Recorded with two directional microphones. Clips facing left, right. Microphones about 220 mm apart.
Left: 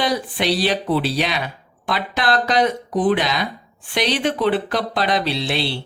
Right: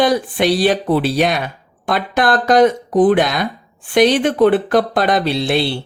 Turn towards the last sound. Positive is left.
turn(degrees=-50)  # may be behind; listen again after turning